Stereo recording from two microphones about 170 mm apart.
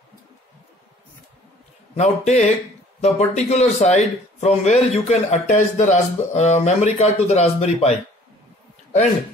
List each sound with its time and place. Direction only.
2.0 s speech: 40° left (ahead or behind)